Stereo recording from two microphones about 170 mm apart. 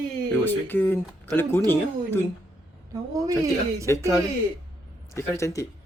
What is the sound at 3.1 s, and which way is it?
Speech, 20° right (ahead or behind).